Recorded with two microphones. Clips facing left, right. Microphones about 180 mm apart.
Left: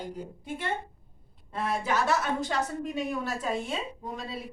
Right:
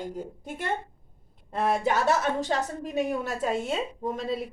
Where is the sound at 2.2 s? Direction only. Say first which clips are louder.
Right 2 dB; 40° right (ahead or behind).